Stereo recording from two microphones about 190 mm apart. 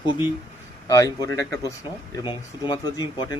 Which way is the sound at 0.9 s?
15° left (ahead or behind).